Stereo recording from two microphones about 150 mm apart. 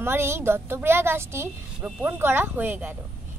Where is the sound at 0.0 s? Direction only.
15° right (ahead or behind).